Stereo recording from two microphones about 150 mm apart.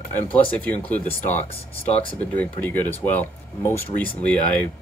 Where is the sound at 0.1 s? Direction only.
10° left (ahead or behind).